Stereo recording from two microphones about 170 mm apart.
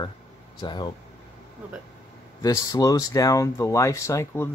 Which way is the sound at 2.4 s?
20° left (ahead or behind).